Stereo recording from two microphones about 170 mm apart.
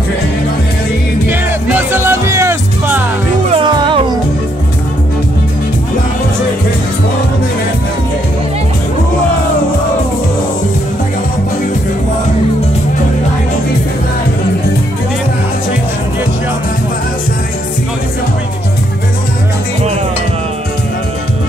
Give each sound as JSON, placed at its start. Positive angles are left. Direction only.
{"t": 1.3, "sound": "music", "side_deg": -10}
{"t": 3.4, "sound": "music", "side_deg": -30}